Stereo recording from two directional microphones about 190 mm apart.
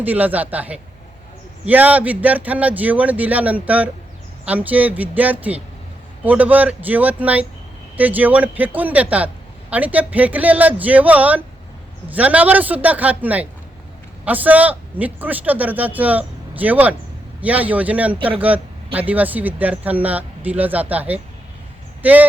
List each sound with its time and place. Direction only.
0.0 s a man's voice: 10° right (ahead or behind)